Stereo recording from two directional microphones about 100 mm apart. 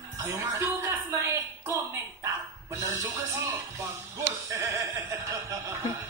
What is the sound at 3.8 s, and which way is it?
A woman's voice, 30° right (ahead or behind).